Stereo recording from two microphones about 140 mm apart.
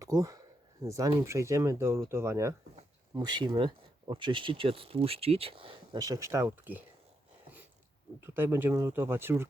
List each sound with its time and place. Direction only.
0.0 s speech: 25° right (ahead or behind)
3.2 s speech: 30° right (ahead or behind)
6.0 s speech: 25° right (ahead or behind)
8.2 s speech: 15° right (ahead or behind)